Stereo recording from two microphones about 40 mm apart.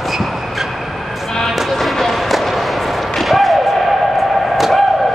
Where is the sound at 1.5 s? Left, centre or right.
Centre.